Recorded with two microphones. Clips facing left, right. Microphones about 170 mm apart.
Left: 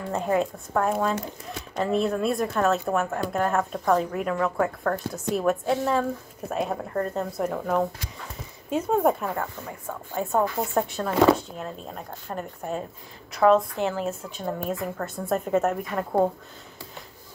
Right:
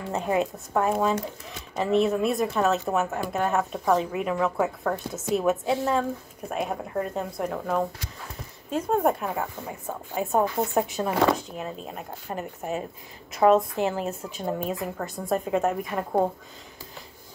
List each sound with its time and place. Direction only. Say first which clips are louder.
0.1 s a woman's voice: left 1 dB; 15° right (ahead or behind)
0.8 s a woman's voice: right 2 dB; 5° right (ahead or behind)
13.4 s a woman's voice: even; 20° right (ahead or behind)
13.7 s a woman's voice: even; 5° right (ahead or behind)